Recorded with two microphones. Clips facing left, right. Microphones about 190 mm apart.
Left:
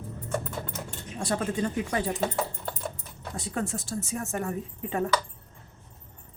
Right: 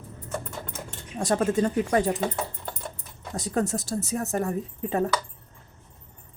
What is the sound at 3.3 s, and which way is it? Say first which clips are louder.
Speech: right 5 dB; 40° right (ahead or behind).